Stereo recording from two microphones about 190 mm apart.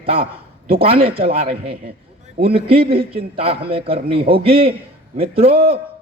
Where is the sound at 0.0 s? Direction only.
30° right (ahead or behind).